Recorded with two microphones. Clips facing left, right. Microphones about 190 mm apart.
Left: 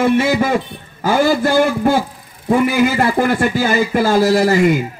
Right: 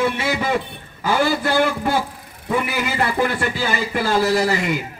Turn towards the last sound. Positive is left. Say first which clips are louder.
# left 6 dB
turn(degrees=45)  # may be behind; listen again after turning